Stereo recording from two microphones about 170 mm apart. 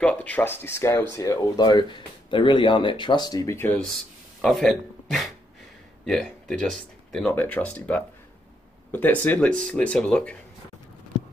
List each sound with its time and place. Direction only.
0.0 s speech: 5° left (ahead or behind)